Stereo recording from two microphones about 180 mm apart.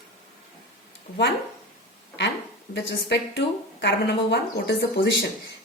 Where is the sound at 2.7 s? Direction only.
80° left.